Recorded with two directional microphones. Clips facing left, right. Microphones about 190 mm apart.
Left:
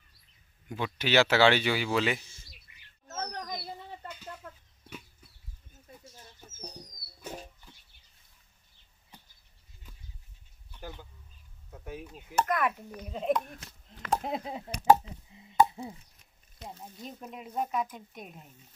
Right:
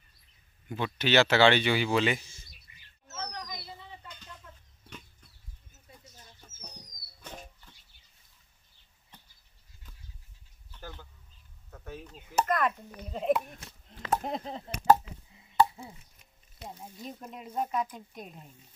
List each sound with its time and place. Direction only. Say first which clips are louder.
0.7 s speech: right 2 dB; 10° left (ahead or behind)
2.7 s bird: left 5 dB; 55° left (ahead or behind)
4.4 s chicken: left 6 dB; 55° left (ahead or behind)
7.2 s music: left 4 dB; 10° left (ahead or behind)
9.1 s a sound: left 2 dB; 10° left (ahead or behind)
10.7 s a sound: left 2 dB; 15° left (ahead or behind)
12.4 s speech: right 1 dB; 5° left (ahead or behind)
15.3 s chop: left 1 dB; 20° left (ahead or behind)
17.0 s speech: even; centre (ahead or behind)